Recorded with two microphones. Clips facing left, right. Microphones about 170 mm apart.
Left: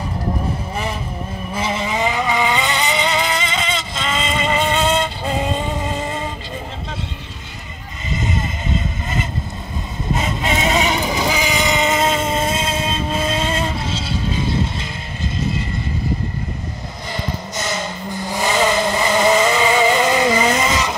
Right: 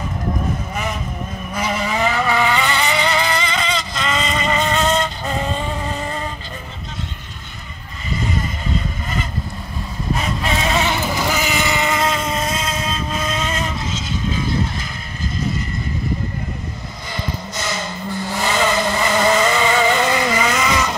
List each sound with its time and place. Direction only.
1.5 s vehicle: 25° left (ahead or behind)
8.1 s vehicle: 20° left (ahead or behind)
18.3 s vehicle: 15° left (ahead or behind)